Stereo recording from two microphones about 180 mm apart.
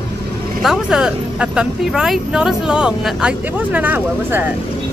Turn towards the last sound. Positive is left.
turn(degrees=-10)  # may be behind; listen again after turning